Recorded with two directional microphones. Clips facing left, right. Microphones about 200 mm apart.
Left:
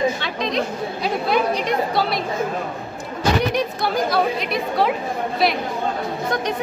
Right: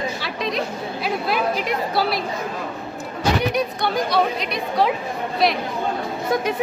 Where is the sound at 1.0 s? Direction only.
5° right (ahead or behind).